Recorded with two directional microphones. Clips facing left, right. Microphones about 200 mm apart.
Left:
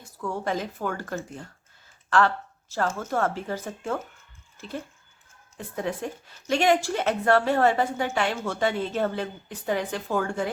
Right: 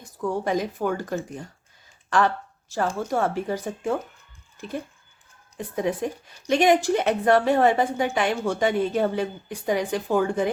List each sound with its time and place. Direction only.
0.0 s a woman's voice: 15° right (ahead or behind)